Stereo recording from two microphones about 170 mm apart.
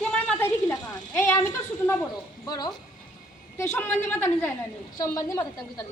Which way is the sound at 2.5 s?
25° left (ahead or behind).